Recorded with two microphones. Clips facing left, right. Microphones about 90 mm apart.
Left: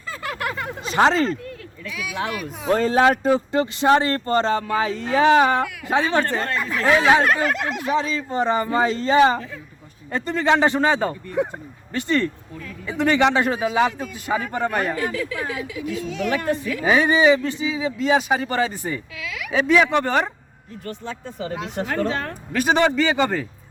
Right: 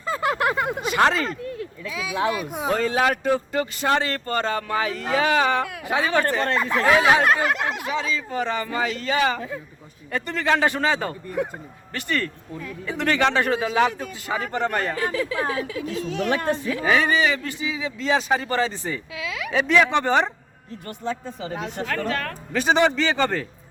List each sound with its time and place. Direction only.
0.1 s a sound: 25° right (ahead or behind)
0.9 s speech: 25° left (ahead or behind)
1.5 s speech: 25° right (ahead or behind)
2.7 s speech: 30° left (ahead or behind)
6.5 s a sound: 25° right (ahead or behind)
7.9 s speech: 35° left (ahead or behind); by 14.9 s 10° left (ahead or behind)
14.9 s speech: 35° right (ahead or behind)
16.5 s a sound: 30° right (ahead or behind)
16.8 s speech: 20° left (ahead or behind)
19.1 s a sound: 25° right (ahead or behind)
19.5 s speech: 5° left (ahead or behind)
21.8 s speech: 20° left (ahead or behind)
22.5 s speech: 5° left (ahead or behind)